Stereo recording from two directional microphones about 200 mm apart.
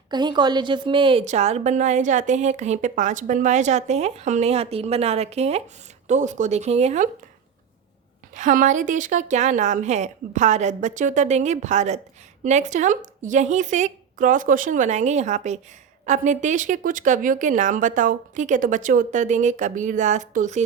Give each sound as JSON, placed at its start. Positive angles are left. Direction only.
{"t": 0.1, "sound": "a woman's voice", "side_deg": -20}
{"t": 8.4, "sound": "a woman's voice", "side_deg": -40}